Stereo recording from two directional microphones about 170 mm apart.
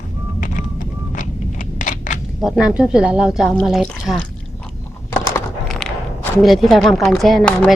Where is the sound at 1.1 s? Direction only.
50° left (ahead or behind).